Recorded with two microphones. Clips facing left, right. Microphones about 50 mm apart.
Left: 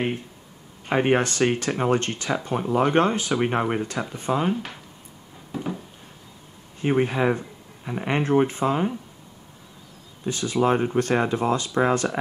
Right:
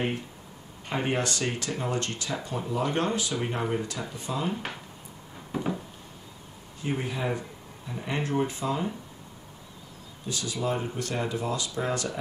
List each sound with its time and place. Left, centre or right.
0.8 s speech: left
5.5 s a sound: centre
6.8 s speech: left
10.2 s speech: left